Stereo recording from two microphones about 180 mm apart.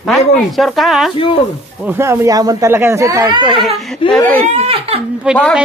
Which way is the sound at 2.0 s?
15° right (ahead or behind).